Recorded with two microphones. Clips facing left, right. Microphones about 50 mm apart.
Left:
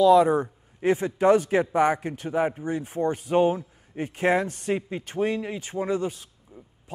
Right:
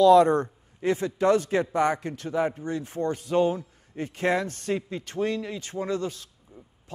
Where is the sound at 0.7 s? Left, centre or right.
Left.